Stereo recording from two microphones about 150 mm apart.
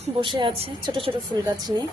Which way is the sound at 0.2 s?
35° right (ahead or behind).